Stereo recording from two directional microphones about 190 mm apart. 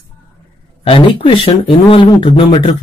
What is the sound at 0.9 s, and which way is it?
Speech, 30° left (ahead or behind).